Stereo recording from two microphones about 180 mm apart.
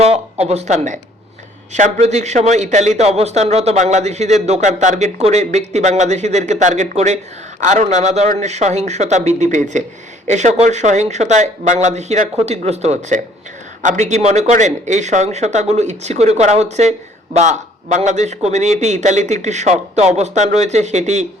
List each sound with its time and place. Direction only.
0.0 s a man's voice: 35° right (ahead or behind)